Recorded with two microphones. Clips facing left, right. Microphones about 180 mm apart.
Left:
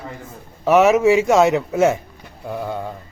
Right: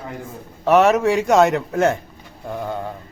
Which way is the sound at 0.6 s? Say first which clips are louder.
Left 2 dB; 5° left (ahead or behind).